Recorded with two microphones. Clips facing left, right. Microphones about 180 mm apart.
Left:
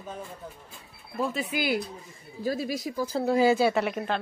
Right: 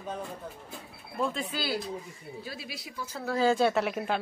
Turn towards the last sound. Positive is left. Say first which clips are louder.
# left 2 dB
turn(degrees=-5)  # may be behind; listen again after turning